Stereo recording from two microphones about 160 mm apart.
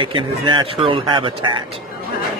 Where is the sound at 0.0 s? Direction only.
30° right (ahead or behind).